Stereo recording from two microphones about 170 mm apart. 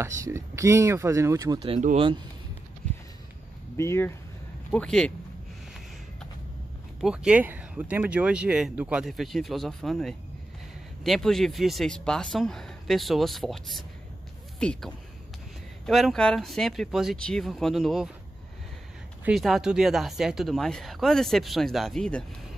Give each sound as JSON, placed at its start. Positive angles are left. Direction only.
{"t": 0.0, "sound": "speech", "side_deg": -15}
{"t": 1.6, "sound": "speech", "side_deg": -35}
{"t": 3.7, "sound": "speech", "side_deg": 15}
{"t": 4.6, "sound": "speech", "side_deg": 5}
{"t": 7.0, "sound": "speech", "side_deg": -5}
{"t": 19.2, "sound": "speech", "side_deg": 0}